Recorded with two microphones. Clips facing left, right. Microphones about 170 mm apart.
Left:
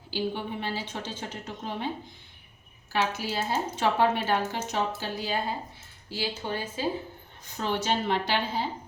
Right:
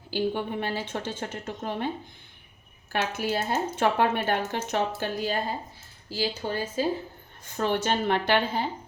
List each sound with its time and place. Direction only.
0.1 s a woman's voice: 55° right (ahead or behind)
2.9 s speech: 55° right (ahead or behind)
6.1 s speech: 40° right (ahead or behind)
7.5 s speech: 55° right (ahead or behind)